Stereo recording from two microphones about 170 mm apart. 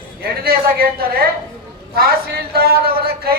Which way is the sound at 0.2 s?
60° right (ahead or behind).